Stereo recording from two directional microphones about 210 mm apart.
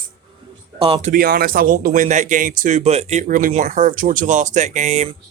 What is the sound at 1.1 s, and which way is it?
A man's voice, 45° right (ahead or behind).